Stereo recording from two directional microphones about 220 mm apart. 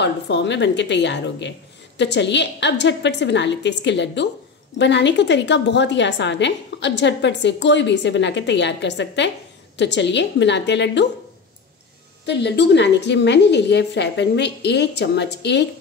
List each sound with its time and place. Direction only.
0.0 s a woman's voice: 50° left (ahead or behind)
12.3 s a woman's voice: 50° left (ahead or behind)